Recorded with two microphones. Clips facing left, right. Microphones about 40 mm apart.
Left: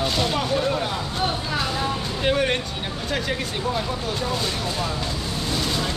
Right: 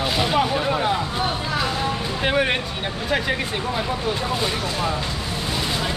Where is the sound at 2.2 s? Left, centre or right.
Centre.